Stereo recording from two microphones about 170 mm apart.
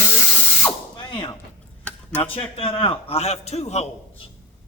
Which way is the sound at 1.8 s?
5° left (ahead or behind).